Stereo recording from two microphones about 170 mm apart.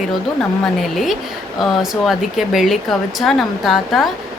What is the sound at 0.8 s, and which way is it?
A woman's voice, centre (ahead or behind).